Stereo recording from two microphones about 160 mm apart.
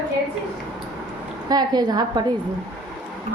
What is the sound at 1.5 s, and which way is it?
Speech, 25° right (ahead or behind).